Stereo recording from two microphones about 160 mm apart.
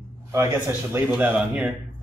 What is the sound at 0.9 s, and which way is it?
Speech, 10° right (ahead or behind).